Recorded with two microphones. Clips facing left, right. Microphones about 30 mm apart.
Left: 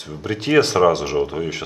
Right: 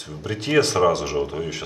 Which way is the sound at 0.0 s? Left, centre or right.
Centre.